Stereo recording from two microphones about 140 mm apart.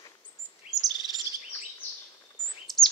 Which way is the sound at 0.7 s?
25° left (ahead or behind).